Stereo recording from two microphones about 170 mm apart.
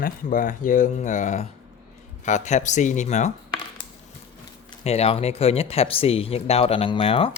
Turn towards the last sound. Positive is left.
turn(degrees=35)  # may be behind; listen again after turning